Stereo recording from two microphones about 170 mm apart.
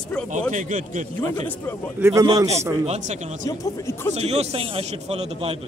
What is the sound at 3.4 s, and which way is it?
Speech, 15° left (ahead or behind).